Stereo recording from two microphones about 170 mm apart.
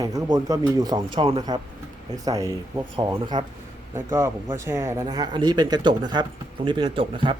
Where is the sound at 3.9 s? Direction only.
15° right (ahead or behind).